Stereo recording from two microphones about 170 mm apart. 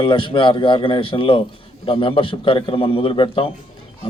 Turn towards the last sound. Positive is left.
turn(degrees=30)  # may be behind; listen again after turning